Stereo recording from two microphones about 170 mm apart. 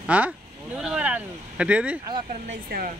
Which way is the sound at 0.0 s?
10° right (ahead or behind).